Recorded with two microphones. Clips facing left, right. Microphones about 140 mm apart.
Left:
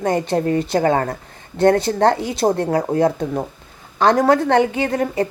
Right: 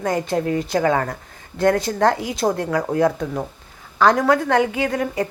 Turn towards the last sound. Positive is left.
turn(degrees=30)  # may be behind; listen again after turning